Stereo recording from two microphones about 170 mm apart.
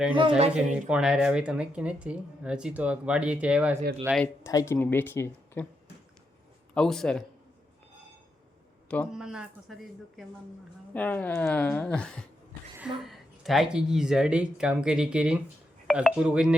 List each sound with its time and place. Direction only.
0.1 s speech: 30° right (ahead or behind)
0.5 s speech: 5° right (ahead or behind)
4.4 s speech: 15° left (ahead or behind)
6.7 s speech: 5° left (ahead or behind)
9.1 s speech: 5° right (ahead or behind)
10.9 s speech: 10° left (ahead or behind)